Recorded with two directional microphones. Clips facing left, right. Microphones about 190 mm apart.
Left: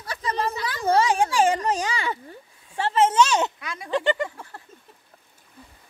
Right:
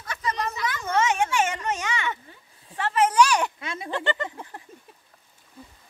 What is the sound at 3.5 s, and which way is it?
Speech, 25° right (ahead or behind).